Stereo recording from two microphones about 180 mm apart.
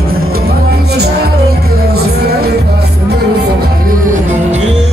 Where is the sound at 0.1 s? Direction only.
60° right (ahead or behind).